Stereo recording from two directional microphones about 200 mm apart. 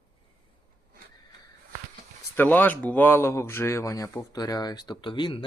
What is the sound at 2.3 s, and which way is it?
Speech, 10° left (ahead or behind).